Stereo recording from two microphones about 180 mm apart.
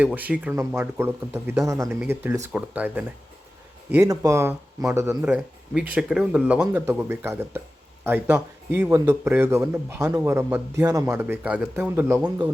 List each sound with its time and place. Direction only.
0.0 s a man's voice: 10° right (ahead or behind)